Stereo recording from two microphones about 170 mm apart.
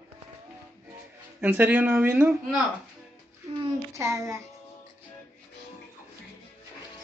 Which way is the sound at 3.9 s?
15° right (ahead or behind).